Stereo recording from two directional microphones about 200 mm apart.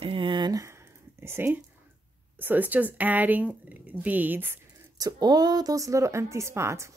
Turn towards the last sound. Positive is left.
turn(degrees=-15)  # may be behind; listen again after turning